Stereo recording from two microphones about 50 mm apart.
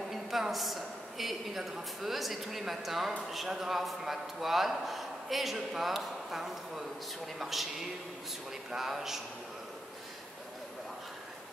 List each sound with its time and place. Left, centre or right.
0.1 s a woman's voice: centre
8.6 s speech: centre